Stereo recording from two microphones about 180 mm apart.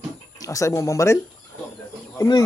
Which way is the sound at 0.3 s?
15° left (ahead or behind).